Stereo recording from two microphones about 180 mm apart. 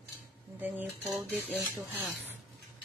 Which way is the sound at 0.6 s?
10° right (ahead or behind).